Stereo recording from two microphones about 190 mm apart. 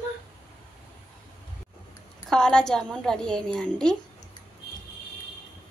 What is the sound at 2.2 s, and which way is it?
A woman's voice, 5° left (ahead or behind).